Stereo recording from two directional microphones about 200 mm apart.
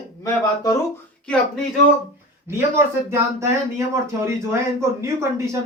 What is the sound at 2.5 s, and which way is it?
Speech, 15° right (ahead or behind).